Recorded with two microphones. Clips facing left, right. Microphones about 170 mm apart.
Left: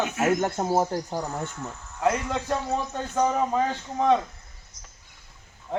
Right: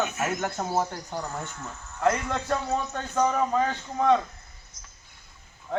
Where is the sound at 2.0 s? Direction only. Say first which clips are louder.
Even; 15° left (ahead or behind).